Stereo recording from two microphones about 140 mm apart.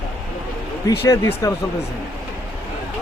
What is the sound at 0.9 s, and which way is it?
Speech, 20° left (ahead or behind).